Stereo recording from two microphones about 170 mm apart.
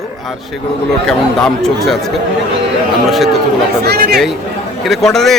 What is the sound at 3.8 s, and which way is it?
Speech, 70° right (ahead or behind).